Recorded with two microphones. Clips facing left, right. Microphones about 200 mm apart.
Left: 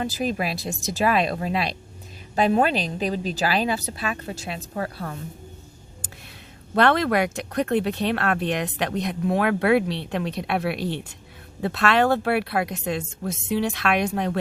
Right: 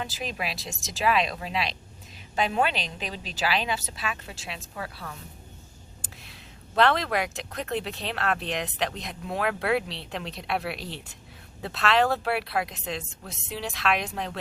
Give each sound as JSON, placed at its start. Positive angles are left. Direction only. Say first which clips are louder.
{"t": 0.0, "sound": "a woman's voice", "louder": "left 8 dB", "side_deg": 45}
{"t": 6.7, "sound": "speech", "louder": "left 4 dB", "side_deg": 55}